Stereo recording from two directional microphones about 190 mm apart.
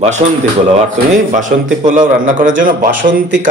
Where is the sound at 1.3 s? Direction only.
40° right (ahead or behind).